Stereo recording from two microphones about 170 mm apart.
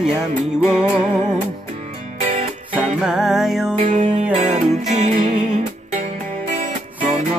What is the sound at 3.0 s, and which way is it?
Music, 5° right (ahead or behind).